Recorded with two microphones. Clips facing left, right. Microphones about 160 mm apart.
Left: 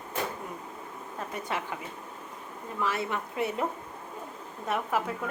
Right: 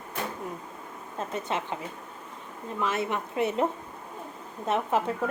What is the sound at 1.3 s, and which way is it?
Speech, 25° right (ahead or behind).